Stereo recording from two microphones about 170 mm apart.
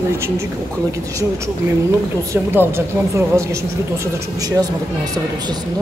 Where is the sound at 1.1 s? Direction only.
20° right (ahead or behind).